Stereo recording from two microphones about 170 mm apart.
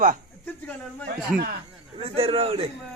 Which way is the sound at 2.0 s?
35° right (ahead or behind).